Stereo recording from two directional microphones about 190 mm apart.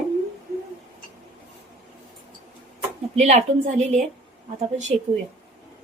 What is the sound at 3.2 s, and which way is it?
Speech, 35° right (ahead or behind).